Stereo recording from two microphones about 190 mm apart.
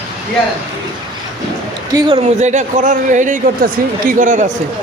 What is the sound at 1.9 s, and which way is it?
Speech, 30° right (ahead or behind).